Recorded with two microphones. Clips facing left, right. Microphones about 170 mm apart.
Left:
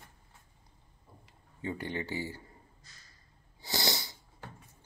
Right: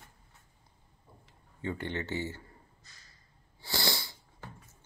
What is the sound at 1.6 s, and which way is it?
Speech, 15° left (ahead or behind).